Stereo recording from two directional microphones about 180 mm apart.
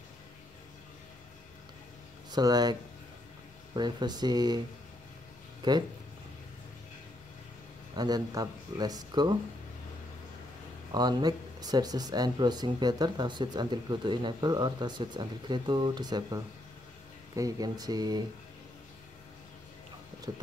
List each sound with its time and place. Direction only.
2.3 s speech: 20° right (ahead or behind)
5.6 s speech: 25° right (ahead or behind)
7.9 s speech: 20° right (ahead or behind)
10.9 s speech: 20° right (ahead or behind)
20.3 s speech: 25° right (ahead or behind)